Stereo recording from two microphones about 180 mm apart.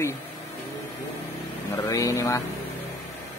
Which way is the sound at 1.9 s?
15° left (ahead or behind).